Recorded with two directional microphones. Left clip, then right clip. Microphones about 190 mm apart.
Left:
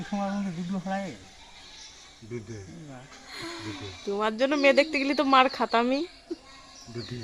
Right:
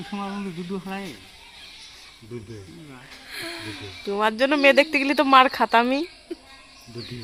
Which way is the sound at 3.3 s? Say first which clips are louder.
Right 4 dB; 40° left (ahead or behind).